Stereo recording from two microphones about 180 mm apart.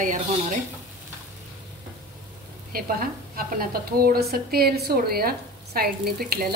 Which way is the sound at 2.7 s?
55° right (ahead or behind).